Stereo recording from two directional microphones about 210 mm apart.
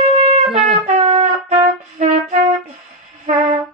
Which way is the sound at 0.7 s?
35° right (ahead or behind).